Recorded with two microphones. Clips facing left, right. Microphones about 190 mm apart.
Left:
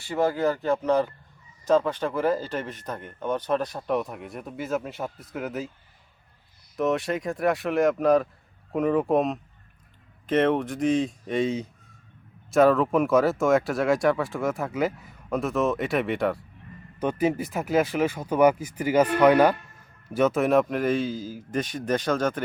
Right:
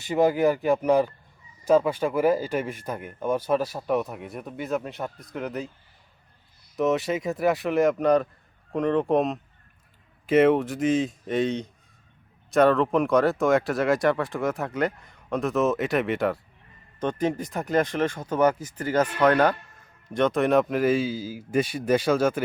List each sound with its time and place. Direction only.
0.0 s speech: 15° right (ahead or behind); by 5.7 s centre (ahead or behind)
6.7 s speech: centre (ahead or behind)